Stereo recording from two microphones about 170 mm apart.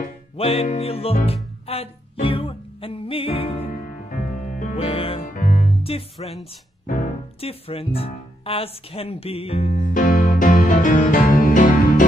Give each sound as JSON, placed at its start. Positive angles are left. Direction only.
{"t": 0.4, "sound": "music", "side_deg": 35}
{"t": 4.1, "sound": "music", "side_deg": 55}
{"t": 4.7, "sound": "music", "side_deg": 35}
{"t": 5.2, "sound": "music", "side_deg": 50}
{"t": 7.3, "sound": "speech", "side_deg": 35}
{"t": 9.8, "sound": "music", "side_deg": 50}